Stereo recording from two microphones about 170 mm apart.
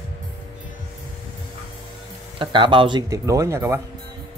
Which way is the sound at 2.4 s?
30° right (ahead or behind).